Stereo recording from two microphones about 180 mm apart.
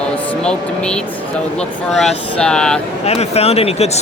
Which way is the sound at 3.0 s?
35° left (ahead or behind).